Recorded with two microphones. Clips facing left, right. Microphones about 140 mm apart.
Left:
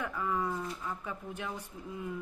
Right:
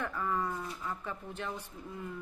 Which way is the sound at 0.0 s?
10° left (ahead or behind).